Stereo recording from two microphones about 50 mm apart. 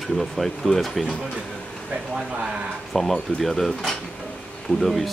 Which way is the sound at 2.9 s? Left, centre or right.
Centre.